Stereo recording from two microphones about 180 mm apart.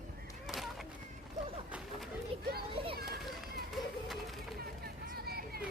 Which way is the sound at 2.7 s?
30° right (ahead or behind).